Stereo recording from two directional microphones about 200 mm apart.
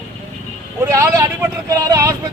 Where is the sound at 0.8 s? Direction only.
15° right (ahead or behind).